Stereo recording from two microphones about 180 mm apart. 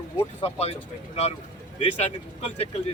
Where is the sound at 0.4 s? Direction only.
35° left (ahead or behind).